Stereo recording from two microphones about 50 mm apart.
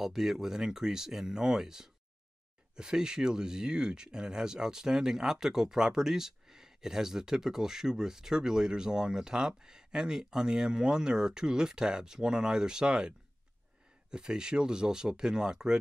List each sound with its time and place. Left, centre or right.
0.0 s speech: centre
14.1 s speech: centre